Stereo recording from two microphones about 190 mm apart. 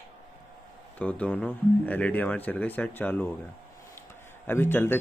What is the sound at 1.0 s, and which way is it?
Speech, 5° left (ahead or behind).